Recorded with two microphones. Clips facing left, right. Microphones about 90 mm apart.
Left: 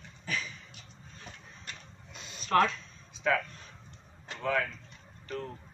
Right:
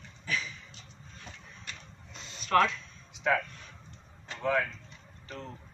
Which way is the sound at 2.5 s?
40° left (ahead or behind).